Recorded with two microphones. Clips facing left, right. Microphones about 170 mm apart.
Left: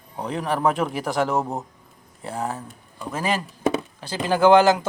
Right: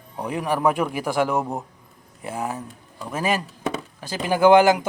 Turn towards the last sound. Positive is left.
turn(degrees=-10)  # may be behind; listen again after turning